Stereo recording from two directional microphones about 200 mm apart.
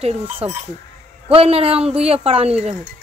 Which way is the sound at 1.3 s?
30° right (ahead or behind).